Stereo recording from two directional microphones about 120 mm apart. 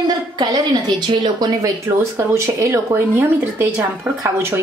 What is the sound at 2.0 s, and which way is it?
Speech, 20° right (ahead or behind).